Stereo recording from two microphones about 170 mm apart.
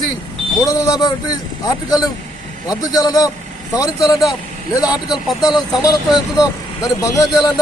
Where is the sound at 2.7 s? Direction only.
20° left (ahead or behind).